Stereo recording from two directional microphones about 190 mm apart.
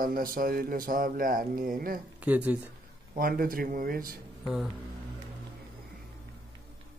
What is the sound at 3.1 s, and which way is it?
Speech, 50° right (ahead or behind).